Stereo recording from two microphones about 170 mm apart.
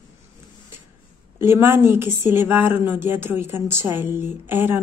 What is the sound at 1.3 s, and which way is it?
A woman's voice, 15° right (ahead or behind).